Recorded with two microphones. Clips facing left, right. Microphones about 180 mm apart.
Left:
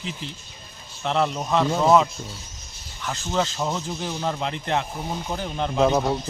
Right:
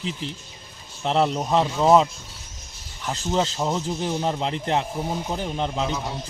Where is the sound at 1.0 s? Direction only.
30° right (ahead or behind).